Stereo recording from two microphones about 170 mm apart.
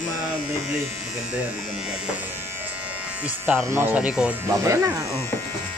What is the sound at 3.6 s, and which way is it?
Speech, 10° right (ahead or behind).